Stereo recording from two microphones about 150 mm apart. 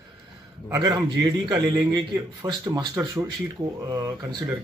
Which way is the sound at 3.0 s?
10° right (ahead or behind).